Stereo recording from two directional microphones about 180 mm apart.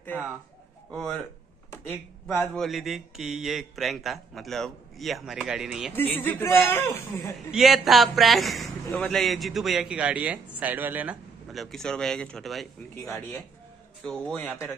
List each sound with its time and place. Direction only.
1.9 s a man's voice: 5° left (ahead or behind)
5.9 s speech: 10° left (ahead or behind)
7.5 s a man's voice: centre (ahead or behind)
13.0 s speech: 15° left (ahead or behind)